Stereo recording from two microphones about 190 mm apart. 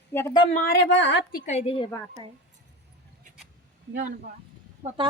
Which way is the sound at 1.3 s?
35° left (ahead or behind).